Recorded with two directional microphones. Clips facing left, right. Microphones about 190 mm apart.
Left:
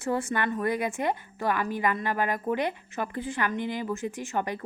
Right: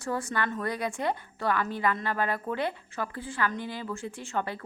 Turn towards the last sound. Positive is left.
turn(degrees=15)  # may be behind; listen again after turning